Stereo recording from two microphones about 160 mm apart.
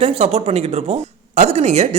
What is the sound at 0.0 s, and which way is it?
A woman's voice, 40° right (ahead or behind).